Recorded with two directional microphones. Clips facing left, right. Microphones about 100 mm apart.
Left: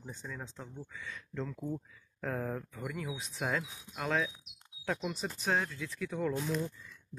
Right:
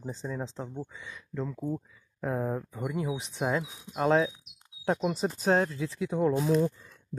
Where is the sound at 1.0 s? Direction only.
10° right (ahead or behind); by 6.4 s 30° right (ahead or behind).